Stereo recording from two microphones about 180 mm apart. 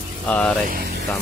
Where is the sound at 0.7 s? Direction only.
55° right (ahead or behind).